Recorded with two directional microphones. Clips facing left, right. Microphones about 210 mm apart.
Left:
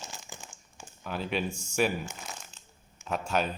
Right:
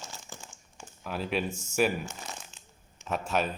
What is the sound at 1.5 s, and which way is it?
Speech, 20° right (ahead or behind).